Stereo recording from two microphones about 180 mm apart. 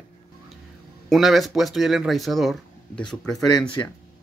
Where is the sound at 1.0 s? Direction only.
Centre (ahead or behind).